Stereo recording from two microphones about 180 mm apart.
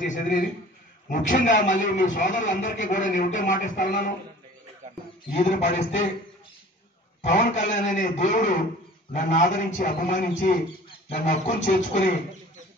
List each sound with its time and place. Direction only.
0.0 s a man's voice: 45° left (ahead or behind)
5.3 s a man's voice: 40° left (ahead or behind)
7.2 s a man's voice: 40° left (ahead or behind)